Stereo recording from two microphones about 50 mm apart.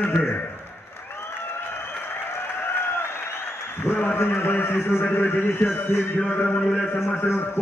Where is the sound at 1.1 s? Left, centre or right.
Left.